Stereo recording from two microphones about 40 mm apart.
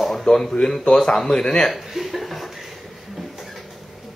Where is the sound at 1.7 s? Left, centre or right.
Centre.